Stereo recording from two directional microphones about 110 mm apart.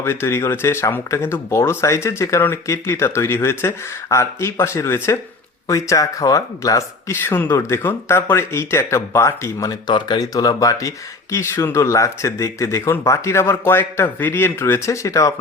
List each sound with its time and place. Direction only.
0.0 s speech: 20° left (ahead or behind)